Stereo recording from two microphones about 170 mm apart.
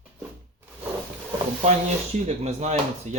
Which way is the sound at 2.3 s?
40° right (ahead or behind).